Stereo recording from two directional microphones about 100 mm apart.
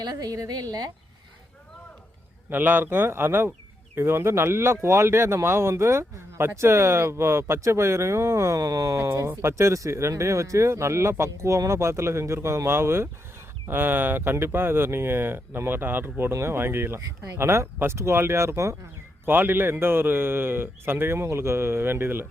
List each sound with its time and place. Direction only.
0.0 s a woman's voice: 40° right (ahead or behind)
2.5 s speech: 20° right (ahead or behind)